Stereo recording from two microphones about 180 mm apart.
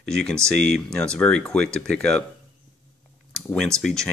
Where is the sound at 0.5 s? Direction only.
65° right (ahead or behind).